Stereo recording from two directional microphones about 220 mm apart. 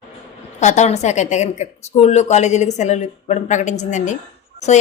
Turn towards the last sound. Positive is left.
turn(degrees=30)  # may be behind; listen again after turning